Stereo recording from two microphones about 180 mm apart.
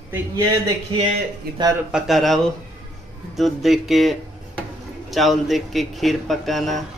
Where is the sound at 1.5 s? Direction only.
60° right (ahead or behind).